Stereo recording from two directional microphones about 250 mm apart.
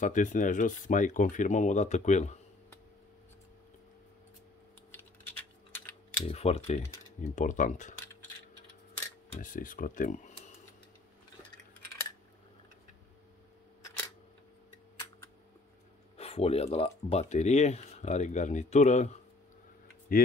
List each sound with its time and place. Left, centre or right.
0.0 s speech: left
4.9 s typing: centre
6.2 s speech: left
9.3 s speech: left
16.2 s speech: left